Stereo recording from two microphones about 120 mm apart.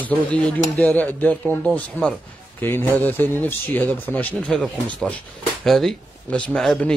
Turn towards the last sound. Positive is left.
turn(degrees=5)  # may be behind; listen again after turning